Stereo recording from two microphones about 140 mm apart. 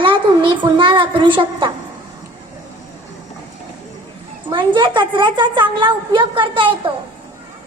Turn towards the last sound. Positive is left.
turn(degrees=-35)  # may be behind; listen again after turning